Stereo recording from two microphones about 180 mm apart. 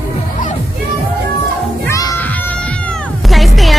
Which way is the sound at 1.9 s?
20° left (ahead or behind).